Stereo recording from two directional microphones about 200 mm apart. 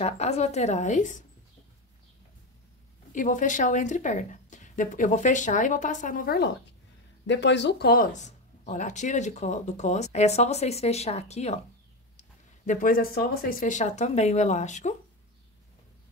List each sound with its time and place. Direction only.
0.0 s speech: 35° left (ahead or behind)
3.1 s speech: 40° left (ahead or behind)
7.2 s speech: 60° left (ahead or behind); by 15.0 s 35° left (ahead or behind)